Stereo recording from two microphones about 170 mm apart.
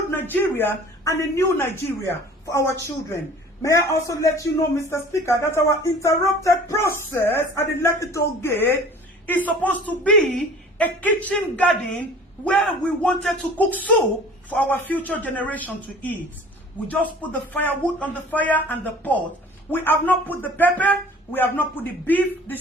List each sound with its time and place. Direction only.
0.1 s a man's voice: 10° left (ahead or behind)
17.5 s a man's voice: 10° left (ahead or behind)